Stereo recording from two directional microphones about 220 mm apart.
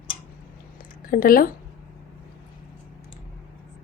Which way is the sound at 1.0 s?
40° left (ahead or behind).